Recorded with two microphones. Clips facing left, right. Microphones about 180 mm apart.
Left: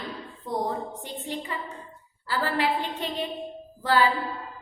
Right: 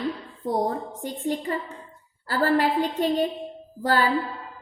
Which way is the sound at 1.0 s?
45° right (ahead or behind).